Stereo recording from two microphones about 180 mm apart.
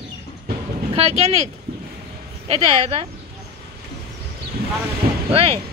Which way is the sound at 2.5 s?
35° right (ahead or behind).